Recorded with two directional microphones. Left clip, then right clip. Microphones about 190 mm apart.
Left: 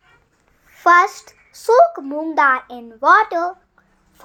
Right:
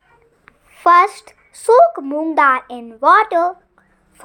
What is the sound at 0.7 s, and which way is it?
A child's voice, 15° right (ahead or behind).